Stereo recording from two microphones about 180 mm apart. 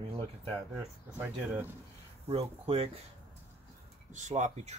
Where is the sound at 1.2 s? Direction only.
10° right (ahead or behind).